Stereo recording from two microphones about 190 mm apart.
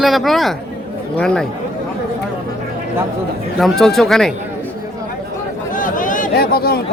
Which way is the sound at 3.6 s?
Centre (ahead or behind).